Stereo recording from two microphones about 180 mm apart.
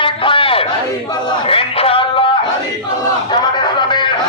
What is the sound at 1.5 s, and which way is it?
Music, 30° left (ahead or behind).